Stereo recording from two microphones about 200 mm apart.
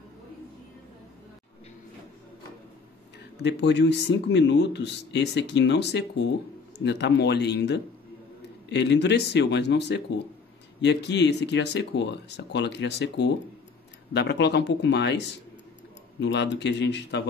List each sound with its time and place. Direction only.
3.4 s speech: 60° left (ahead or behind)